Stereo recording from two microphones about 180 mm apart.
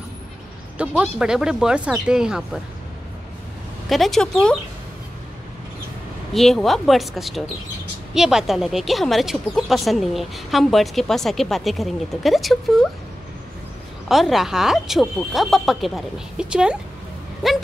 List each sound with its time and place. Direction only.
0.7 s speech: 5° right (ahead or behind)
3.9 s speech: centre (ahead or behind)
6.3 s speech: centre (ahead or behind)
14.0 s speech: centre (ahead or behind)